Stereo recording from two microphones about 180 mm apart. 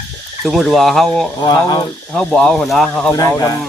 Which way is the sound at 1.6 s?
20° left (ahead or behind).